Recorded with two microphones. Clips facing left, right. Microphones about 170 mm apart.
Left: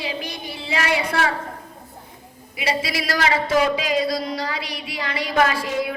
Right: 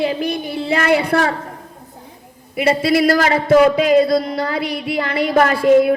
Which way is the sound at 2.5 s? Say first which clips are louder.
Right 10 dB; 55° right (ahead or behind).